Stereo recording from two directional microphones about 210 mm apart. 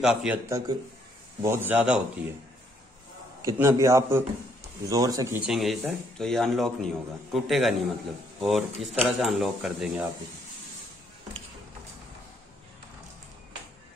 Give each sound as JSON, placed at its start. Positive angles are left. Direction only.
{"t": 0.0, "sound": "a man's voice", "side_deg": -5}
{"t": 0.5, "sound": "a man's voice", "side_deg": -15}
{"t": 3.4, "sound": "a man's voice", "side_deg": -15}
{"t": 5.5, "sound": "a man's voice", "side_deg": 0}